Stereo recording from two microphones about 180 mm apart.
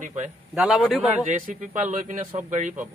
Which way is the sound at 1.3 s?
45° right (ahead or behind).